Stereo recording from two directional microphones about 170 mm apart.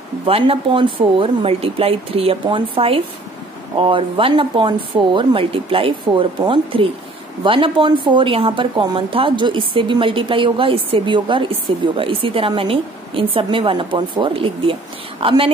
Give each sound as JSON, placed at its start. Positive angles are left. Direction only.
{"t": 0.3, "sound": "a woman's voice", "side_deg": -35}